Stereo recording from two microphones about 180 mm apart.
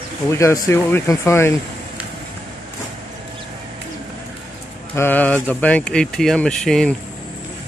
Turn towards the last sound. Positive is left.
turn(degrees=5)  # may be behind; listen again after turning